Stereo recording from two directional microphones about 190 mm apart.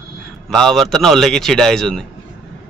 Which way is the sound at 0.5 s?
Centre (ahead or behind).